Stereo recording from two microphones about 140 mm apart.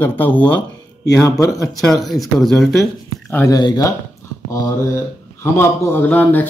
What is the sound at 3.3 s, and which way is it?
Speech, 20° left (ahead or behind).